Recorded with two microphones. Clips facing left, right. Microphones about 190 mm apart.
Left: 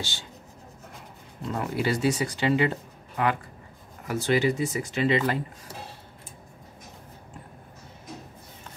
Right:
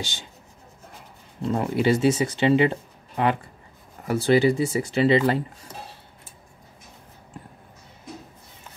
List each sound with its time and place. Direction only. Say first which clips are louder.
0.0 s speech: right 2 dB; 15° right (ahead or behind)
1.5 s speech: right 6 dB; 25° right (ahead or behind)